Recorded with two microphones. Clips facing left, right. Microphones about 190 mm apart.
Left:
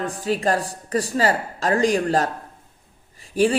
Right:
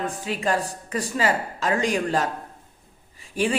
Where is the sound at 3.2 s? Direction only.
35° left (ahead or behind).